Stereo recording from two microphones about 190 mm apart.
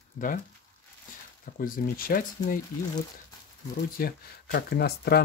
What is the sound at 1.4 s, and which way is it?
Speech, 50° left (ahead or behind).